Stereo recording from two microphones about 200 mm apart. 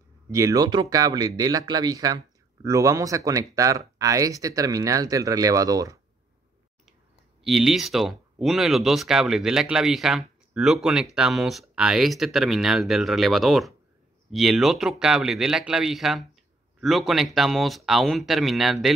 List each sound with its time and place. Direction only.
0.3 s speech: 15° right (ahead or behind)
7.4 s speech: centre (ahead or behind)